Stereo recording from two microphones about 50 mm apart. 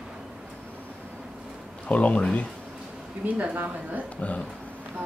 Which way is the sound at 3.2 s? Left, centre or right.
Right.